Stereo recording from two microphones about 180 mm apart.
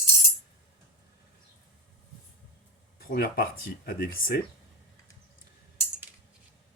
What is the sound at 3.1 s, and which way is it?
Speech, 55° left (ahead or behind).